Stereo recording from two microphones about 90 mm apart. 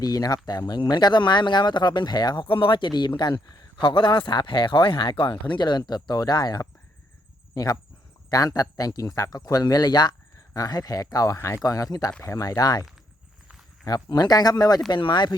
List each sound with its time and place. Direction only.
0.0 s speech: 45° left (ahead or behind); by 5.3 s 70° left (ahead or behind)
5.5 s speech: 55° left (ahead or behind); by 11.6 s 35° left (ahead or behind)
11.6 s speech: 45° left (ahead or behind)
13.8 s speech: 50° left (ahead or behind)
14.8 s speech: 60° left (ahead or behind)